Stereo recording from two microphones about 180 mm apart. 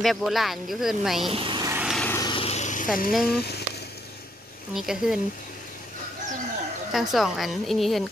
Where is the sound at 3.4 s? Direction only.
65° left (ahead or behind).